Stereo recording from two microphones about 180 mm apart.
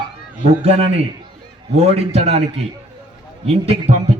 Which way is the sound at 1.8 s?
35° right (ahead or behind).